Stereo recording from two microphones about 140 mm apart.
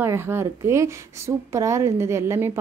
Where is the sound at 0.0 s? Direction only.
15° right (ahead or behind).